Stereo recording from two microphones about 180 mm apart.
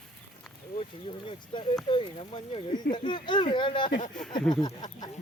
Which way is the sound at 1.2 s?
25° left (ahead or behind).